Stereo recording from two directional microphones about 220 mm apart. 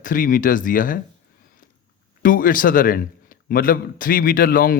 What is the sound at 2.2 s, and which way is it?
A man's voice, 40° left (ahead or behind).